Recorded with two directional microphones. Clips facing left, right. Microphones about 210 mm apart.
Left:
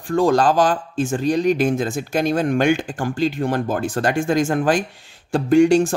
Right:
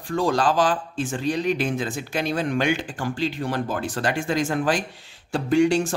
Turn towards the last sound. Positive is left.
turn(degrees=45)  # may be behind; listen again after turning